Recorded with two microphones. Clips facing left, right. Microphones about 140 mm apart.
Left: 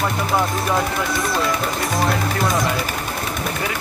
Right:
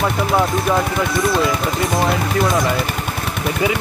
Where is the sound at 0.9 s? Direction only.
Centre (ahead or behind).